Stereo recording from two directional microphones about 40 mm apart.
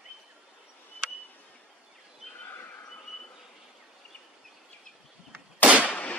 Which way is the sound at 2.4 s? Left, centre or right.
Left.